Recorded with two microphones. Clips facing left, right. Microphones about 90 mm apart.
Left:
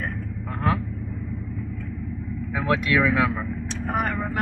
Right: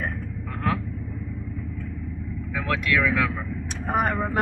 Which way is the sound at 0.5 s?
25° left (ahead or behind).